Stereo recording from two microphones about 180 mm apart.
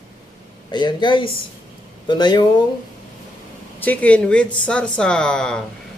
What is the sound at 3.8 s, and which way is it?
Speech, 10° left (ahead or behind).